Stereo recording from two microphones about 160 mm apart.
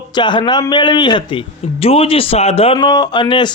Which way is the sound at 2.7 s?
25° left (ahead or behind).